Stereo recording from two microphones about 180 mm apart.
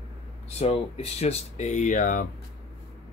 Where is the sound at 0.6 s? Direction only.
35° left (ahead or behind).